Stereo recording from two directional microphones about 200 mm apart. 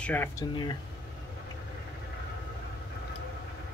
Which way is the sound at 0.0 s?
10° left (ahead or behind).